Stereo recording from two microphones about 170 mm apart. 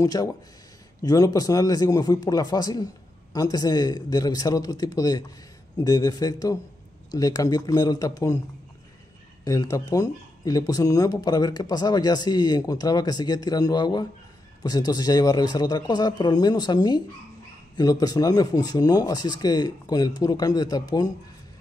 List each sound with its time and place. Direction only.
0.0 s speech: 20° left (ahead or behind)
9.4 s speech: 20° left (ahead or behind)